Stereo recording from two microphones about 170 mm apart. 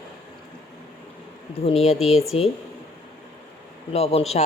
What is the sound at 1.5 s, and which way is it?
Speech, 35° left (ahead or behind).